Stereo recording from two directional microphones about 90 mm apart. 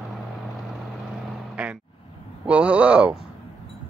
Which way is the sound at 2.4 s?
15° right (ahead or behind).